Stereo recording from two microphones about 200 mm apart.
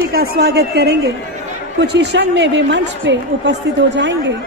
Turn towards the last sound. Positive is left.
turn(degrees=-65)  # may be behind; listen again after turning